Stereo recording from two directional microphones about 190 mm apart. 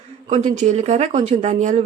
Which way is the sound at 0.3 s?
35° right (ahead or behind).